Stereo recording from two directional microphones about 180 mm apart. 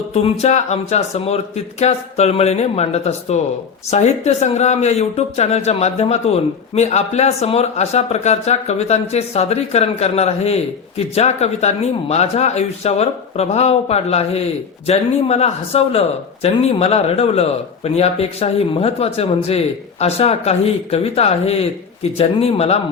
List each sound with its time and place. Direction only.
0.1 s speech: 35° left (ahead or behind)